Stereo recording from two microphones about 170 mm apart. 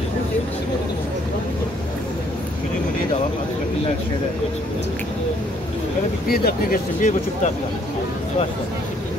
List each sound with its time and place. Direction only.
6.2 s speech: 60° left (ahead or behind)